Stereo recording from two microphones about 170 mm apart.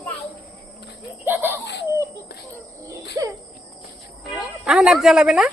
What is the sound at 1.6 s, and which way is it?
Laughter, 90° left.